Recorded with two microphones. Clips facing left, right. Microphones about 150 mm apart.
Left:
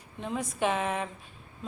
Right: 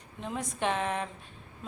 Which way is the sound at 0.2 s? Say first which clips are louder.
Left 3 dB; centre (ahead or behind).